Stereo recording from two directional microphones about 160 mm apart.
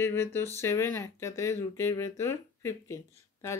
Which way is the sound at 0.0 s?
15° left (ahead or behind).